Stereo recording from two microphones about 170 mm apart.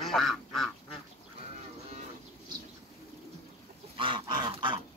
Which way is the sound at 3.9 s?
30° right (ahead or behind).